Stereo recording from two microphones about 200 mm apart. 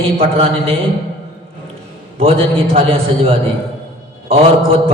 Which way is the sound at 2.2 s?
30° right (ahead or behind).